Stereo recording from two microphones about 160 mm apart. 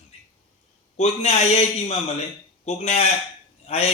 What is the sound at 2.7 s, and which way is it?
A man's voice, 45° left (ahead or behind).